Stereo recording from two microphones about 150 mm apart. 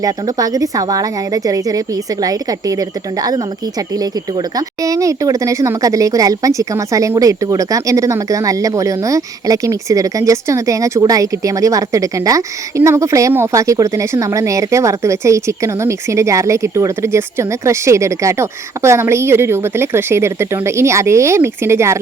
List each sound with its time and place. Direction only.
0.0 s speech: 25° right (ahead or behind)
4.5 s speech: 25° right (ahead or behind)